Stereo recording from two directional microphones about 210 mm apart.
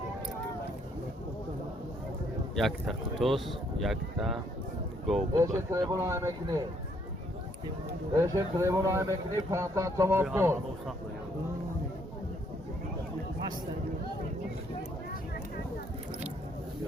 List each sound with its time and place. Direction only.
2.6 s speech: centre (ahead or behind)
5.4 s speech: 15° right (ahead or behind)
8.1 s speech: 15° right (ahead or behind)